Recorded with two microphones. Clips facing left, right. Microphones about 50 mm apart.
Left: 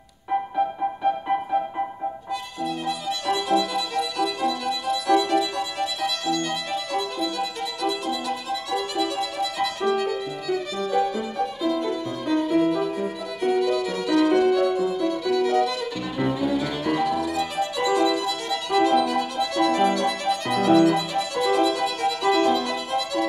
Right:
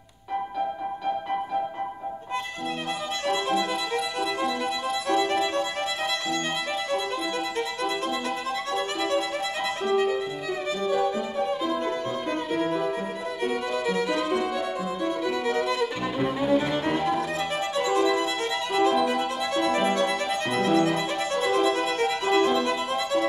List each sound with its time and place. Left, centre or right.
3.3 s violin: right